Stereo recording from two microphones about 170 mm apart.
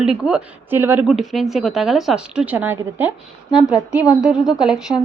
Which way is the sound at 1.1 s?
Centre (ahead or behind).